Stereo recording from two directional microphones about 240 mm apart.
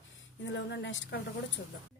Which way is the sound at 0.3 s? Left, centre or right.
Left.